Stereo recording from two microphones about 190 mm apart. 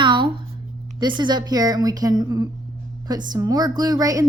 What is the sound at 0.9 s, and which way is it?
A woman's voice, 25° right (ahead or behind).